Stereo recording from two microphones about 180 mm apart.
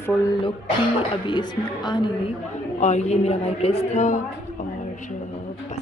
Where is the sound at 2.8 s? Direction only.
40° left (ahead or behind).